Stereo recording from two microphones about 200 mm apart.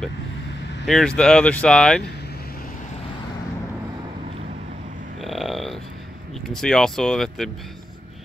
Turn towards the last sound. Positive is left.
turn(degrees=0)  # may be behind; listen again after turning